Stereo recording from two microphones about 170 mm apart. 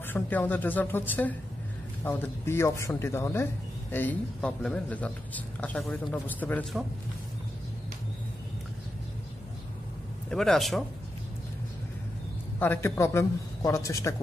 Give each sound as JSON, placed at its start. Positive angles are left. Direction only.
{"t": 0.0, "sound": "a man's voice", "side_deg": 10}
{"t": 10.3, "sound": "a man's voice", "side_deg": 0}
{"t": 12.5, "sound": "a man's voice", "side_deg": 10}